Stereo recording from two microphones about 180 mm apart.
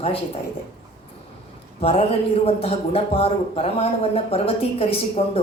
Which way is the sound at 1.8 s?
30° left (ahead or behind).